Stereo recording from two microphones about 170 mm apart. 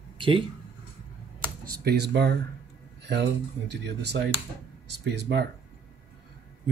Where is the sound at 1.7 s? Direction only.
70° right (ahead or behind).